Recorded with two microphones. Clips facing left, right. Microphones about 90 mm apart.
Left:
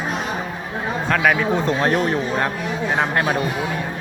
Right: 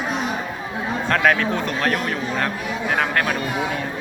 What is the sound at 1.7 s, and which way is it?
Speech, 25° left (ahead or behind).